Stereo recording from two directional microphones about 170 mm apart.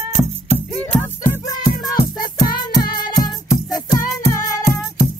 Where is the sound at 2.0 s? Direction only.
20° left (ahead or behind).